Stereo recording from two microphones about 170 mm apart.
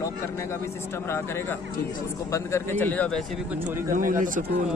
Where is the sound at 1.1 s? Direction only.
10° left (ahead or behind).